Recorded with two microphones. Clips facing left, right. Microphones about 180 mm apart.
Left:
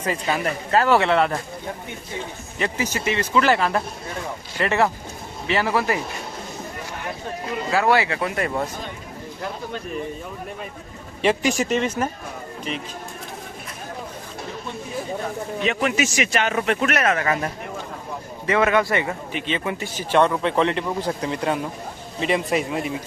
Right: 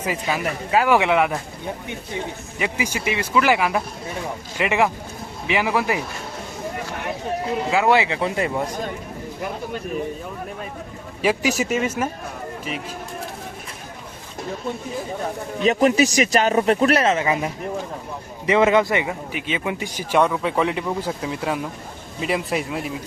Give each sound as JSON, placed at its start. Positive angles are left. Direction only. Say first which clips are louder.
{"t": 0.0, "sound": "speech", "louder": "even", "side_deg": -5}
{"t": 2.6, "sound": "speech", "louder": "even", "side_deg": -10}
{"t": 7.7, "sound": "speech", "louder": "right 1 dB", "side_deg": -20}
{"t": 11.2, "sound": "speech", "louder": "even", "side_deg": -5}
{"t": 15.6, "sound": "a man's voice", "louder": "right 6 dB", "side_deg": -40}